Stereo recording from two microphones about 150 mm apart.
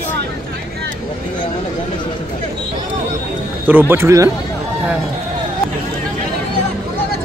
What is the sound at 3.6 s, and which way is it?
Speech, 15° right (ahead or behind).